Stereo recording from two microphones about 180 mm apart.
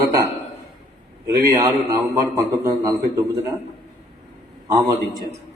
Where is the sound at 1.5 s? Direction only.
20° right (ahead or behind).